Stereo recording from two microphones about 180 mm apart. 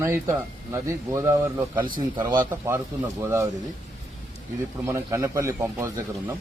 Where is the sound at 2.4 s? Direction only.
15° right (ahead or behind).